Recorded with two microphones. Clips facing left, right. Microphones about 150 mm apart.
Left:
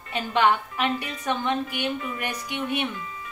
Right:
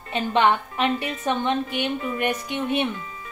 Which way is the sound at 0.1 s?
25° right (ahead or behind).